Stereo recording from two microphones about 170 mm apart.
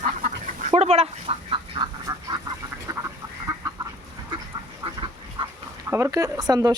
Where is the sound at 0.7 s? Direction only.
40° right (ahead or behind).